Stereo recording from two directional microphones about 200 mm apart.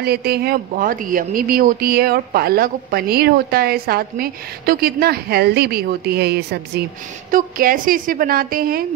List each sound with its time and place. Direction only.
0.0 s speech: 50° right (ahead or behind)